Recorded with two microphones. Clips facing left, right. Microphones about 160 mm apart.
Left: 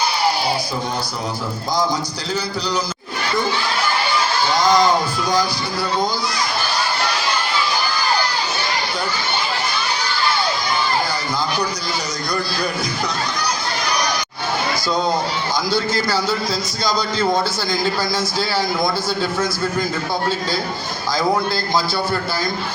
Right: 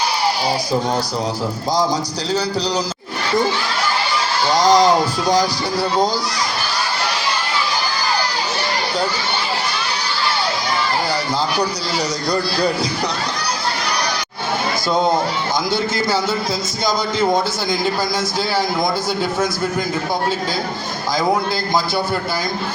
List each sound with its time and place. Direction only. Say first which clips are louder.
4.5 s a man's voice: right 3 dB; 35° right (ahead or behind)
12.3 s a man's voice: right 4 dB; 35° right (ahead or behind)